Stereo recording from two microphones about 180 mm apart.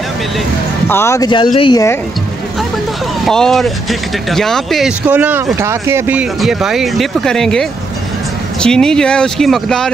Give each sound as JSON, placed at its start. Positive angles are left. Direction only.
{"t": 0.8, "sound": "speech", "side_deg": 15}
{"t": 3.3, "sound": "speech", "side_deg": 0}